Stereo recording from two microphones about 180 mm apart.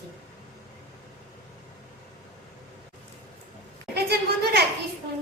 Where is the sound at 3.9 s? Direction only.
65° right (ahead or behind).